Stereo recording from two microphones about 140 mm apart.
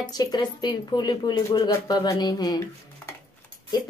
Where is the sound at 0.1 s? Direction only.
30° left (ahead or behind).